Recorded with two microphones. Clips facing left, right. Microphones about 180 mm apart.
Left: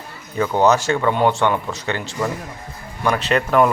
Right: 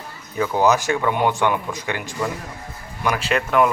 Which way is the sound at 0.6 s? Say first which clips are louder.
Left 2 dB; 10° right (ahead or behind).